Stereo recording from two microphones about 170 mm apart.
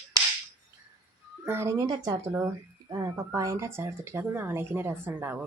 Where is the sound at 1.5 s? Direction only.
15° right (ahead or behind).